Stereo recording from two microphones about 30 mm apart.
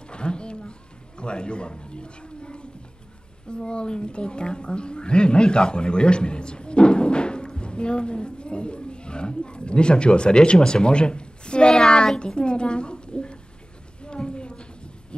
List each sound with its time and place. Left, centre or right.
0.1 s music: left
3.4 s a woman's voice: left
14.0 s a sound: left